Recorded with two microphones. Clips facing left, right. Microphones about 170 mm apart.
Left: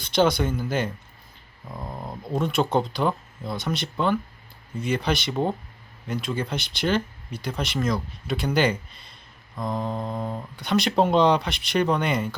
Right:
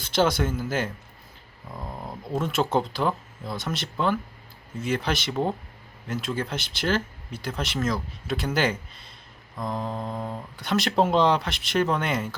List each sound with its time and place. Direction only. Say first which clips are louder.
0.0 s speech: left 2 dB; centre (ahead or behind)